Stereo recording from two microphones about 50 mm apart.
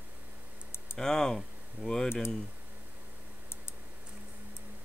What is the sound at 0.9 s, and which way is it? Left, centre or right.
Speech, centre.